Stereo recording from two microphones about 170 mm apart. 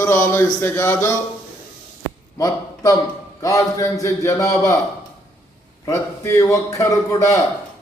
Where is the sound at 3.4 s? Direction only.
20° left (ahead or behind).